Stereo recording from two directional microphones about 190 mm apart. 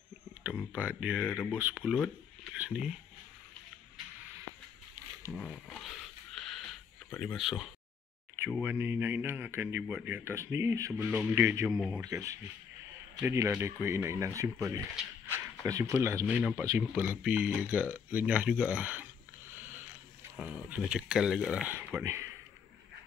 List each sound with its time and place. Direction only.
0.4 s a sound: 5° right (ahead or behind)
1.2 s speech: 10° left (ahead or behind)
1.5 s speech: 10° right (ahead or behind)
5.3 s a sound: centre (ahead or behind)
7.1 s speech: centre (ahead or behind)
11.7 s speech: centre (ahead or behind)
12.0 s speech: 15° right (ahead or behind)
19.5 s sniff: 10° right (ahead or behind)
20.7 s speech: 5° right (ahead or behind)